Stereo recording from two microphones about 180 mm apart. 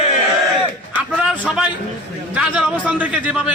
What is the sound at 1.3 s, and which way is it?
A man's voice, 5° right (ahead or behind).